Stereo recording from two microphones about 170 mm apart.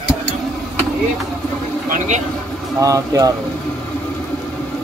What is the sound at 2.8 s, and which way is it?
Speech, 20° right (ahead or behind).